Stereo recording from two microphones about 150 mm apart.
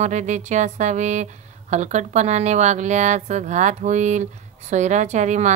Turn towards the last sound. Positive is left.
turn(degrees=-50)  # may be behind; listen again after turning